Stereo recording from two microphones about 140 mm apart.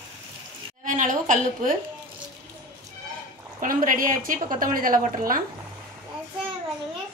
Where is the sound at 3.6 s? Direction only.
75° right (ahead or behind).